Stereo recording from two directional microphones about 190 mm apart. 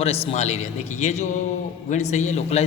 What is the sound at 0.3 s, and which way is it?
A man's voice, 35° left (ahead or behind).